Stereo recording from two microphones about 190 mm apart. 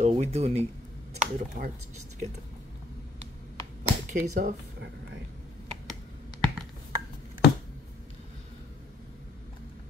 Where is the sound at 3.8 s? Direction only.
40° right (ahead or behind).